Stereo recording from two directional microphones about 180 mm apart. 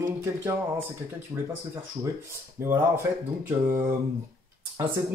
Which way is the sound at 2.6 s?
15° right (ahead or behind).